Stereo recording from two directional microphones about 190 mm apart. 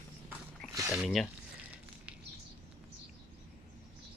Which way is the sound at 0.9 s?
Centre (ahead or behind).